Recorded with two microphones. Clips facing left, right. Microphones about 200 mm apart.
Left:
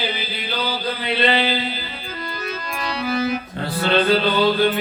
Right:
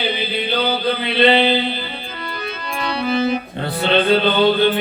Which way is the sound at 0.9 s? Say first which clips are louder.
Right 5 dB; 25° right (ahead or behind).